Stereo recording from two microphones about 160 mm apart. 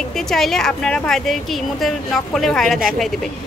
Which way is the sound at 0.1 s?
5° left (ahead or behind).